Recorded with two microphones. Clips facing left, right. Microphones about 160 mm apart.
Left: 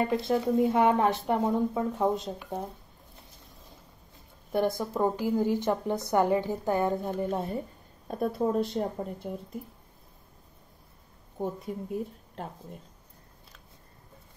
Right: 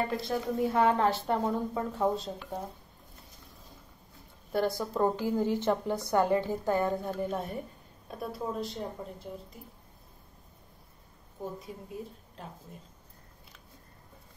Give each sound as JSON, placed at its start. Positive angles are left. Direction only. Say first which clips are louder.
{"t": 0.1, "sound": "a woman's voice", "louder": "left 6 dB", "side_deg": 20}
{"t": 4.5, "sound": "a woman's voice", "louder": "left 2 dB", "side_deg": 20}
{"t": 8.1, "sound": "speech", "louder": "left 8 dB", "side_deg": 50}
{"t": 11.6, "sound": "speech", "louder": "left 8 dB", "side_deg": 55}